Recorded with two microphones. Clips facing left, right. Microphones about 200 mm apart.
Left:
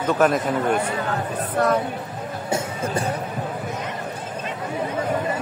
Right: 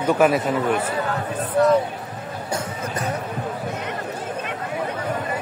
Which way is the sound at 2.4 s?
25° left (ahead or behind).